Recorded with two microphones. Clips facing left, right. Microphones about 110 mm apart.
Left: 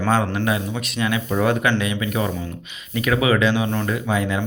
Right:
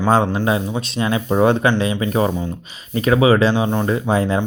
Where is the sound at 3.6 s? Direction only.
20° right (ahead or behind).